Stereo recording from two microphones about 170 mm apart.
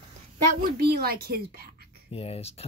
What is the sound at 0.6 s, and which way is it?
Speech, 70° right (ahead or behind).